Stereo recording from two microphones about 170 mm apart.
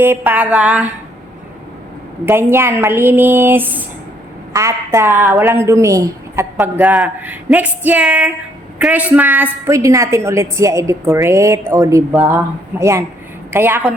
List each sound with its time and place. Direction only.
0.0 s a woman's voice: 10° right (ahead or behind)
2.2 s a woman's voice: 15° right (ahead or behind)